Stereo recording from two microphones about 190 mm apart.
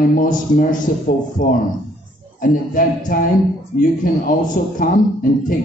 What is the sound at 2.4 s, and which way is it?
Speech, 45° left (ahead or behind).